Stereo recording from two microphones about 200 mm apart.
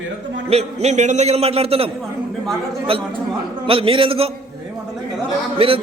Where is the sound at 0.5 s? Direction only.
35° right (ahead or behind).